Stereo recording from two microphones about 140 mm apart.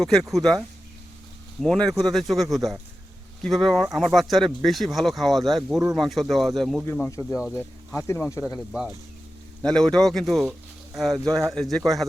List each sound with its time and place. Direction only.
0.0 s speech: centre (ahead or behind)
1.6 s speech: 5° left (ahead or behind); by 8.5 s 20° left (ahead or behind)
8.5 s speech: 5° right (ahead or behind)